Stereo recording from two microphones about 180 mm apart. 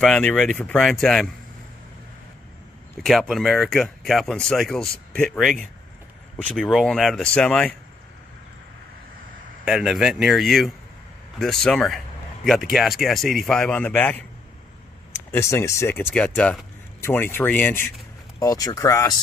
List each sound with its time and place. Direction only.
0.0 s speech: 5° left (ahead or behind)
3.0 s speech: centre (ahead or behind)
9.7 s speech: 5° right (ahead or behind)
15.3 s speech: 15° left (ahead or behind)